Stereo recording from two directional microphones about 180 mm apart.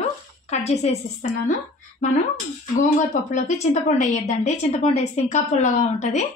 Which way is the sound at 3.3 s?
40° left (ahead or behind).